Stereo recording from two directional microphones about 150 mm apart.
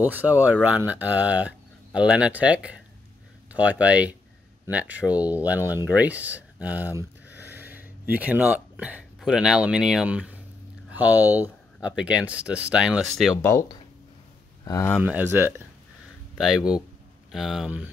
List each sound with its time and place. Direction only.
0.0 s speech: 10° right (ahead or behind)
7.0 s a sound: 10° right (ahead or behind)
7.5 s speech: 10° right (ahead or behind)
13.4 s speech: 20° left (ahead or behind)
14.6 s a sound: 25° left (ahead or behind)
15.0 s speech: 5° right (ahead or behind)
16.3 s speech: centre (ahead or behind)